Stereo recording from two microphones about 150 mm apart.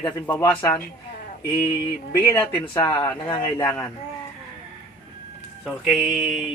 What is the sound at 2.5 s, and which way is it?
Speech, 35° left (ahead or behind).